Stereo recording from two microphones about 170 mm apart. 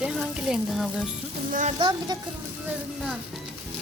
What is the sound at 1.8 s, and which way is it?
Speech, 25° right (ahead or behind).